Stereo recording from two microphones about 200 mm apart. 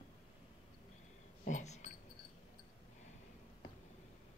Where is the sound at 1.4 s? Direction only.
35° left (ahead or behind).